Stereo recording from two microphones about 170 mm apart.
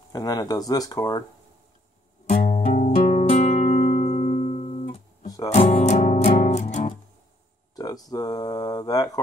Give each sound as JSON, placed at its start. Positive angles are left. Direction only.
{"t": 0.1, "sound": "speech", "side_deg": 25}
{"t": 2.5, "sound": "music", "side_deg": 35}
{"t": 5.2, "sound": "music", "side_deg": 20}
{"t": 5.5, "sound": "music", "side_deg": 35}
{"t": 7.7, "sound": "mantra", "side_deg": 20}